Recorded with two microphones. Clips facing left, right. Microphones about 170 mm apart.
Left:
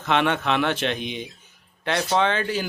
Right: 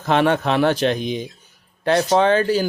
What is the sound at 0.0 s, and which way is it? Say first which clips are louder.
Speech: right 5 dB; 40° right (ahead or behind).